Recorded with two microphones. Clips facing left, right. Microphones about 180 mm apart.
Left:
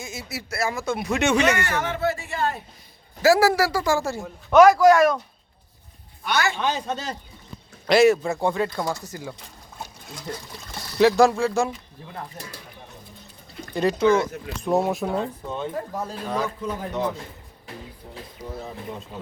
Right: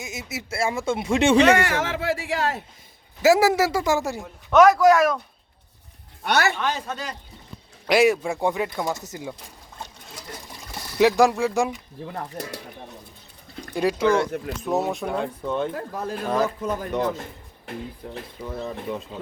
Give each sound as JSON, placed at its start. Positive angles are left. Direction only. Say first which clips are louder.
{"t": 0.0, "sound": "speech", "louder": "right 1 dB", "side_deg": -20}
{"t": 1.5, "sound": "speech", "louder": "right 3 dB", "side_deg": -90}
{"t": 3.2, "sound": "speech", "louder": "even", "side_deg": -20}
{"t": 4.4, "sound": "speech", "louder": "left 1 dB", "side_deg": 0}
{"t": 6.2, "sound": "speech", "louder": "right 2 dB", "side_deg": -70}
{"t": 6.6, "sound": "speech", "louder": "left 1 dB", "side_deg": 15}
{"t": 7.9, "sound": "speech", "louder": "left 2 dB", "side_deg": -10}
{"t": 10.9, "sound": "speech", "louder": "left 1 dB", "side_deg": -10}
{"t": 14.6, "sound": "speech", "louder": "left 3 dB", "side_deg": 0}
{"t": 15.5, "sound": "speech", "louder": "even", "side_deg": -55}
{"t": 18.0, "sound": "speech", "louder": "right 6 dB", "side_deg": -70}